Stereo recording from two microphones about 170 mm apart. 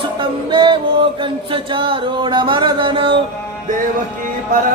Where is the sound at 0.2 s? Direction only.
30° right (ahead or behind).